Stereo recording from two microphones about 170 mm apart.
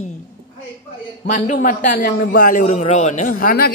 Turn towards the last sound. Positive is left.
turn(degrees=55)  # may be behind; listen again after turning